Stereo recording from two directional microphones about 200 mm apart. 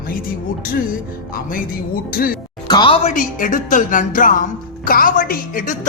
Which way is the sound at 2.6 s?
20° left (ahead or behind).